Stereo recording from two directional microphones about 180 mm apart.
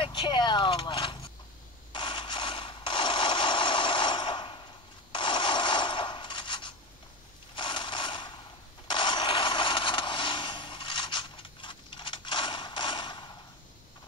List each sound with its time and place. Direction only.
0.0 s a sound: 25° left (ahead or behind)
7.5 s mechanisms: 25° left (ahead or behind)
8.8 s vehicle: 25° left (ahead or behind)